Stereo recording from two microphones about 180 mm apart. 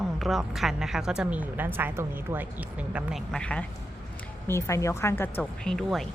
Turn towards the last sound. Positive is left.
turn(degrees=0)  # may be behind; listen again after turning